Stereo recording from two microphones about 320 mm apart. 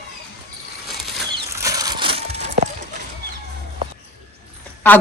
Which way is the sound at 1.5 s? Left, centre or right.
Centre.